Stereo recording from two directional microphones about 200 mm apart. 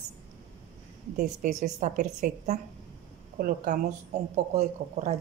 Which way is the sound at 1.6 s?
45° right (ahead or behind).